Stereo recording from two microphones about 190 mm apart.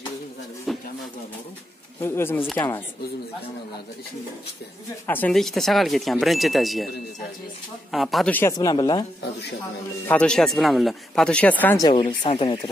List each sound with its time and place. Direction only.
0.7 s a sound: centre (ahead or behind)
2.0 s speech: 15° left (ahead or behind)
5.0 s speech: 10° left (ahead or behind)
7.9 s speech: centre (ahead or behind); by 9.0 s 20° left (ahead or behind)
10.0 s speech: 5° left (ahead or behind)
11.8 s speech: 25° left (ahead or behind)